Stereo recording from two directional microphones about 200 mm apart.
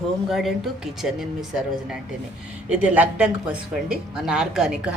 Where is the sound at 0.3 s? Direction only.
Centre (ahead or behind).